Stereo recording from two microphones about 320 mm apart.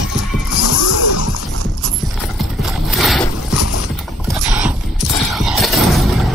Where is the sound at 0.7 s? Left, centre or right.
Left.